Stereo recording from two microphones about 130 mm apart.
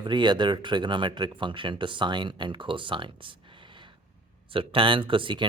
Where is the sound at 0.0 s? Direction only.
35° right (ahead or behind).